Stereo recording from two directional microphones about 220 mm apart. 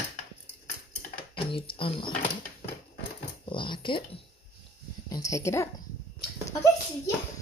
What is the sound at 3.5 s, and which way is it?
Speech, 20° left (ahead or behind).